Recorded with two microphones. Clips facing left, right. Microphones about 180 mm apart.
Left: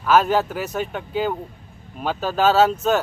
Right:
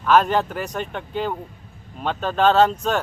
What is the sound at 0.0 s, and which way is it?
Speech, 5° left (ahead or behind).